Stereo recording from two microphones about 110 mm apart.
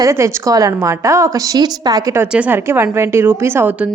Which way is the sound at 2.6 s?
20° right (ahead or behind).